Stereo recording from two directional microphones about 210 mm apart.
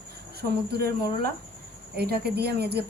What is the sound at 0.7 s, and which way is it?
Speech, 50° right (ahead or behind).